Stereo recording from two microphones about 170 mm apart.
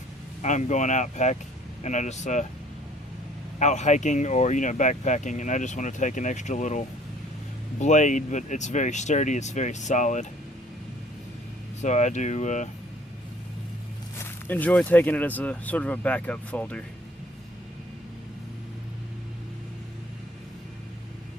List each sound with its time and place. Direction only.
0.4 s speech: 45° left (ahead or behind)
3.6 s speech: 45° left (ahead or behind)
11.8 s speech: 45° left (ahead or behind)
14.4 s speech: 10° left (ahead or behind)